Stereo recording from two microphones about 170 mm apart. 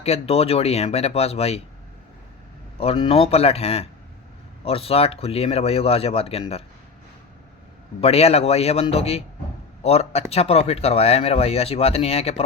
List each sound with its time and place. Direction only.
0.0 s speech: 35° left (ahead or behind)
2.7 s speech: 35° left (ahead or behind)
8.0 s speech: 35° left (ahead or behind)